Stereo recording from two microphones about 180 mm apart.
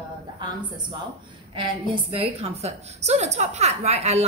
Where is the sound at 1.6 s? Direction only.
30° right (ahead or behind).